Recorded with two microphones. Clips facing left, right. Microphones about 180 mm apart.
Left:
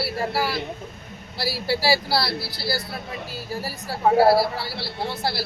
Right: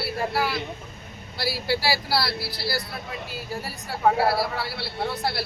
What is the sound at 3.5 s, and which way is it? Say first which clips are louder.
A woman's voice: left 3 dB; 30° left (ahead or behind).